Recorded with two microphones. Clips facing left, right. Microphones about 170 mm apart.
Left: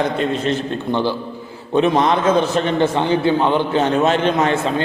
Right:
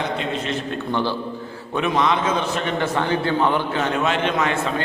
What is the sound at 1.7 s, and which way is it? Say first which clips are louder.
A man's voice: left 5 dB; 30° left (ahead or behind).